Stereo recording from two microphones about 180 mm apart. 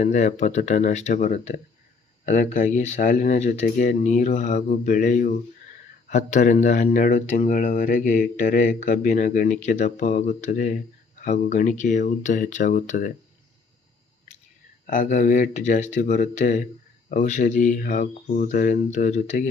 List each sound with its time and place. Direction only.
0.0 s speech: 45° left (ahead or behind)
14.3 s whispering: 40° left (ahead or behind)
14.8 s speech: 50° left (ahead or behind)